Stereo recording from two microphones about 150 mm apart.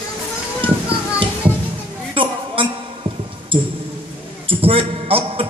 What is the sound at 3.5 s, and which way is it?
Speech, 35° right (ahead or behind).